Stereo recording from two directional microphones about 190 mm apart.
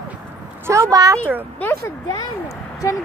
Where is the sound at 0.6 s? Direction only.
15° right (ahead or behind).